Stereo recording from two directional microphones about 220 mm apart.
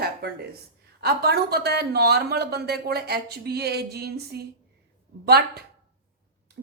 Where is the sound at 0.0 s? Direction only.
45° right (ahead or behind).